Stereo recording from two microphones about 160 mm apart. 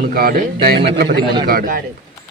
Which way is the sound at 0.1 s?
70° right (ahead or behind).